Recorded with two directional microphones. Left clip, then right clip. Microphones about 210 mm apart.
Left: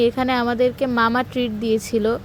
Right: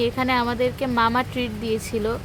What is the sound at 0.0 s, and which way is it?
Speech, 25° left (ahead or behind).